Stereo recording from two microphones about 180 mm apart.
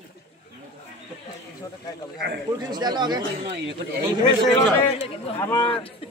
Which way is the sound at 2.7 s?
25° right (ahead or behind).